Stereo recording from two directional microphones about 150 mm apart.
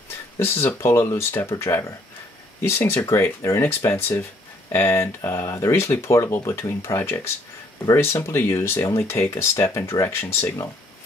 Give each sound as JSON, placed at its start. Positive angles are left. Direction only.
{"t": 0.4, "sound": "speech", "side_deg": 15}